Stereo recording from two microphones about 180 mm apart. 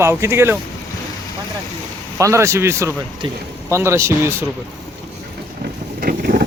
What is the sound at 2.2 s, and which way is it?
Speech, 15° right (ahead or behind).